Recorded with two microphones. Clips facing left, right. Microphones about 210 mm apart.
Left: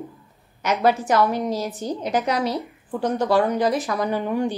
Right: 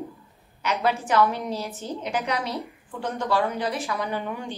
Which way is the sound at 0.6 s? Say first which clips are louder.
Left 5 dB; 40° left (ahead or behind).